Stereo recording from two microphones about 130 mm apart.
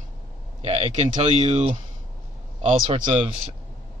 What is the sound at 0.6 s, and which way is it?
Speech, 55° right (ahead or behind).